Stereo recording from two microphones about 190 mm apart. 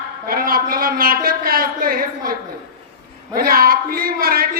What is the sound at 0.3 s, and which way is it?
A man's voice, 50° right (ahead or behind).